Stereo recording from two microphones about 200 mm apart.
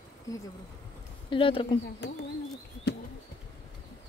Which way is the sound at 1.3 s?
25° left (ahead or behind).